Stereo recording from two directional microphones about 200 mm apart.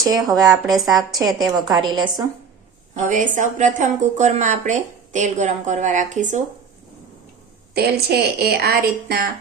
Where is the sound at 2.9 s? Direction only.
40° right (ahead or behind).